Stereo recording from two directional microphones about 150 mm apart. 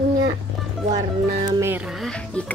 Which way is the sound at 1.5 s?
15° right (ahead or behind).